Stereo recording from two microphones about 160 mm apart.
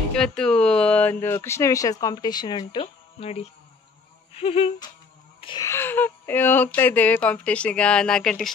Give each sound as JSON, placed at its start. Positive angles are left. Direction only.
{"t": 0.1, "sound": "speech", "side_deg": 5}
{"t": 4.3, "sound": "a sound", "side_deg": 40}
{"t": 5.6, "sound": "speech", "side_deg": 15}